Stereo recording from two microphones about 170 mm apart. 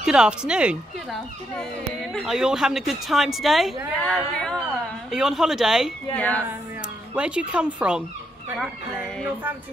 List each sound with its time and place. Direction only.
0.0 s speech: 5° right (ahead or behind)
6.1 s music: 10° left (ahead or behind)
7.2 s speech: 5° right (ahead or behind)